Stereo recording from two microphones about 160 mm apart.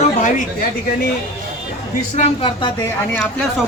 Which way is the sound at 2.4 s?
35° left (ahead or behind).